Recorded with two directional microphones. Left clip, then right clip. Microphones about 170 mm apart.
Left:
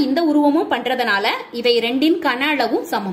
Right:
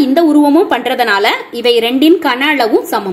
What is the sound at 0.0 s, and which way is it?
A woman's voice, 35° right (ahead or behind).